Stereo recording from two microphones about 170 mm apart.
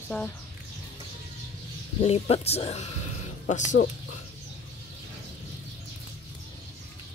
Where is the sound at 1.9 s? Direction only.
35° left (ahead or behind).